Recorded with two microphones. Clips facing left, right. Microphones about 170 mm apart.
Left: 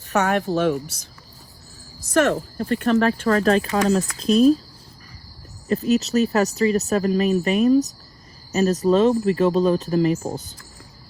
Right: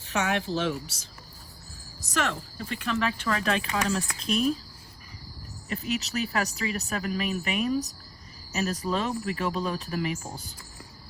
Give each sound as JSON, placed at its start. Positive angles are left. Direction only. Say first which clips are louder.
{"t": 0.1, "sound": "speech", "louder": "left 7 dB", "side_deg": 50}
{"t": 2.1, "sound": "speech", "louder": "left 11 dB", "side_deg": 45}
{"t": 5.6, "sound": "speech", "louder": "left 11 dB", "side_deg": 35}